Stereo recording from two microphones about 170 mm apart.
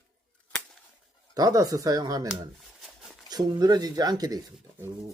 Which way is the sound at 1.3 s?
20° right (ahead or behind).